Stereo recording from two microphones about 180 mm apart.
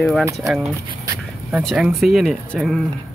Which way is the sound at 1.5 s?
5° right (ahead or behind).